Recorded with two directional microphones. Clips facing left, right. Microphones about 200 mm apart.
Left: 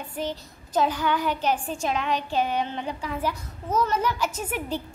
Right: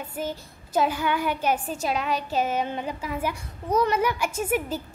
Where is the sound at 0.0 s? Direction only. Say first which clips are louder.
Even; 5° right (ahead or behind).